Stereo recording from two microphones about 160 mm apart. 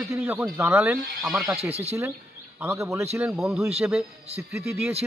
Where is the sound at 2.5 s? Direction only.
15° right (ahead or behind).